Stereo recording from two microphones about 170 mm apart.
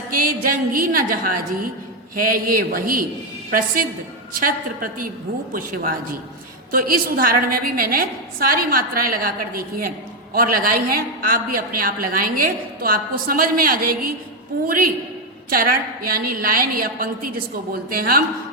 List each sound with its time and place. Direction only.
0.1 s a sound: 55° right (ahead or behind)
0.4 s a woman's voice: 55° right (ahead or behind)
4.4 s a woman's voice: 55° right (ahead or behind)